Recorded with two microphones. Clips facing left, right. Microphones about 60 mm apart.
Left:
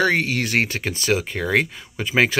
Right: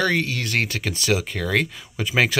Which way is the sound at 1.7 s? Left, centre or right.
Centre.